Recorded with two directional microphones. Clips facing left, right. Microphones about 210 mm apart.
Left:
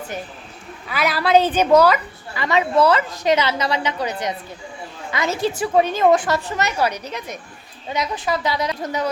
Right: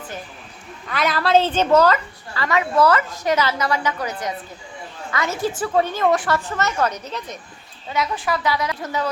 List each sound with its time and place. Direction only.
0.9 s a woman's voice: 5° left (ahead or behind)